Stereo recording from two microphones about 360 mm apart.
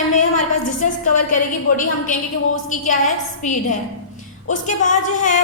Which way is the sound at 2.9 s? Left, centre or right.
Left.